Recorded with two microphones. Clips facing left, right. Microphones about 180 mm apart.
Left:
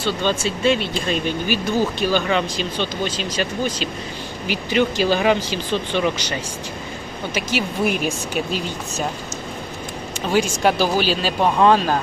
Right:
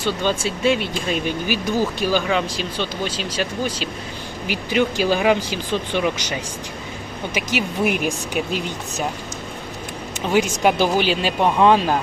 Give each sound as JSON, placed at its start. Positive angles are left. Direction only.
{"t": 0.0, "sound": "speech", "side_deg": -10}
{"t": 7.5, "sound": "speech", "side_deg": -15}
{"t": 10.3, "sound": "speech", "side_deg": -15}